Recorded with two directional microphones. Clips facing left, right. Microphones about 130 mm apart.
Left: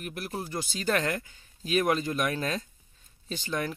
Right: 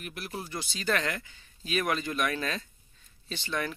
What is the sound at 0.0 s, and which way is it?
Speech, 45° left (ahead or behind).